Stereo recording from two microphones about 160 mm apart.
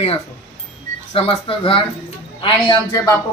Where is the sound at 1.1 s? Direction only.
35° left (ahead or behind).